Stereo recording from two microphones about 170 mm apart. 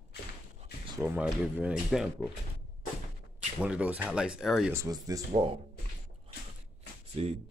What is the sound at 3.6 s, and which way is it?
Speech, 5° right (ahead or behind).